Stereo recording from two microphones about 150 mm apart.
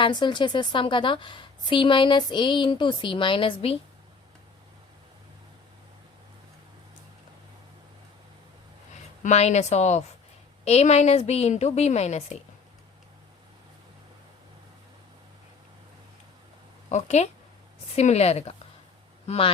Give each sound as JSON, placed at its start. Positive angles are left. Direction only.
{"t": 0.0, "sound": "a woman's voice", "side_deg": 30}
{"t": 9.2, "sound": "a woman's voice", "side_deg": 50}
{"t": 16.9, "sound": "a woman's voice", "side_deg": 50}